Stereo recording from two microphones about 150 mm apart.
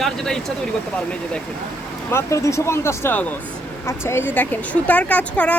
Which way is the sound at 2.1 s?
20° left (ahead or behind).